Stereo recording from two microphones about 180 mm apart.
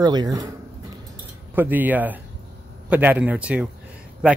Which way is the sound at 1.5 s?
10° right (ahead or behind).